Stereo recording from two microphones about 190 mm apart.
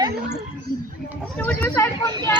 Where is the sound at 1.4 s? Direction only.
10° left (ahead or behind).